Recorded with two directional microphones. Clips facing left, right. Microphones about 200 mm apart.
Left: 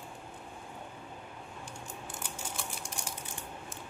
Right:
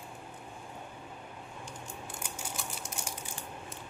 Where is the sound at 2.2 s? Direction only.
5° right (ahead or behind).